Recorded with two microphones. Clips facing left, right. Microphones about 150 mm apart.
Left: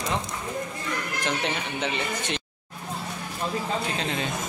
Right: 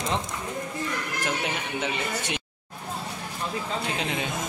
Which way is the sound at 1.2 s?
5° right (ahead or behind).